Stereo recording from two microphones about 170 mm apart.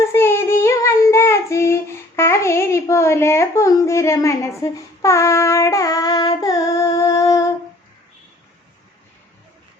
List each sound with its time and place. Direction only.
0.0 s child singing: 15° left (ahead or behind)
5.0 s female singing: 15° left (ahead or behind)